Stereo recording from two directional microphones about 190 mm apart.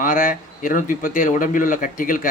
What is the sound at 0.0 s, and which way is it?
Speech, 45° left (ahead or behind).